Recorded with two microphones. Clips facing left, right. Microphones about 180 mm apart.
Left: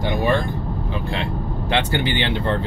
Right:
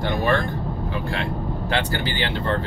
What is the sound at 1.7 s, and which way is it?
Speech, 20° left (ahead or behind).